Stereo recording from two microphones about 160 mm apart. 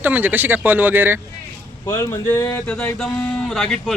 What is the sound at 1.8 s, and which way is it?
Speech, 20° left (ahead or behind).